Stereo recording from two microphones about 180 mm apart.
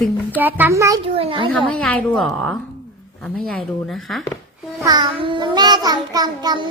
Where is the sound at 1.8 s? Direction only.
5° left (ahead or behind).